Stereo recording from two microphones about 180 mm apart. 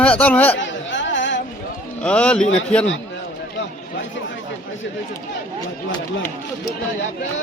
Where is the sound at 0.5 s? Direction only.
90° left.